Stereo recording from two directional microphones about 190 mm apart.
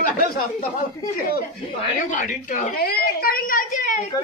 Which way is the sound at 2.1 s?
40° left (ahead or behind).